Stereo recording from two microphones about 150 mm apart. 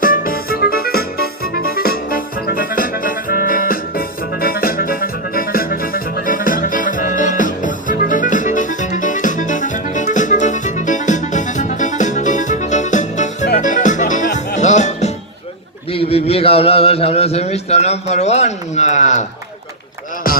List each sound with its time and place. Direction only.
0.0 s music: 70° left (ahead or behind); by 15.1 s 50° left (ahead or behind)
15.9 s a man's voice: 40° left (ahead or behind)
20.2 s music: 75° left (ahead or behind)